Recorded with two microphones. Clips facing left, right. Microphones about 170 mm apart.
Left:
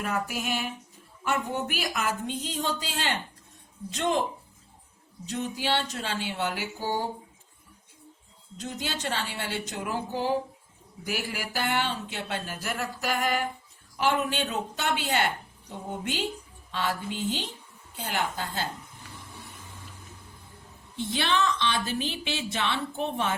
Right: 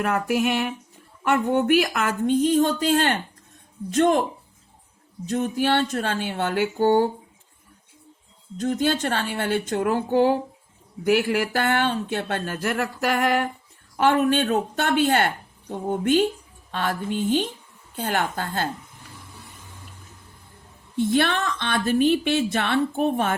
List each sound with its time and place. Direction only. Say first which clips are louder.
0.0 s a woman's voice: right 8 dB; 65° right (ahead or behind)
5.3 s a woman's voice: right 7 dB; 50° right (ahead or behind)
8.5 s a woman's voice: right 12 dB; 55° right (ahead or behind)
20.9 s a woman's voice: right 7 dB; 55° right (ahead or behind)